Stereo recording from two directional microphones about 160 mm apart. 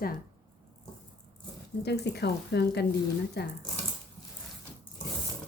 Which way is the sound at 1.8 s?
90° left.